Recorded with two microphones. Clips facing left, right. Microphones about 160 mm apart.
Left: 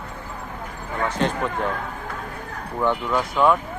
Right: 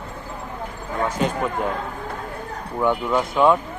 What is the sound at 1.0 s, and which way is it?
Speech, 10° right (ahead or behind).